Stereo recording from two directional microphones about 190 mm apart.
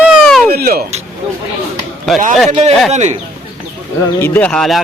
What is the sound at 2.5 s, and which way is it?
Speech, 40° right (ahead or behind).